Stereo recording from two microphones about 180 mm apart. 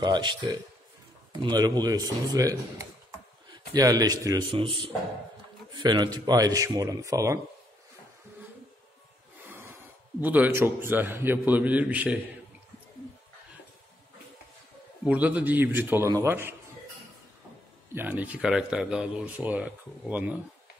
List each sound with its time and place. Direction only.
0.0 s a man's voice: 25° right (ahead or behind)
9.5 s snort: 15° right (ahead or behind)
10.2 s speech: 10° right (ahead or behind)
15.0 s speech: 10° right (ahead or behind)
17.9 s speech: 10° right (ahead or behind)